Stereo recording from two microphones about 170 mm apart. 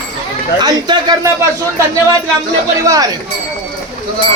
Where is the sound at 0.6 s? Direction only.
25° right (ahead or behind).